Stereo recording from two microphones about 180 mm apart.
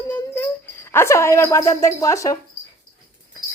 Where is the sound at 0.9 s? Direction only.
15° left (ahead or behind).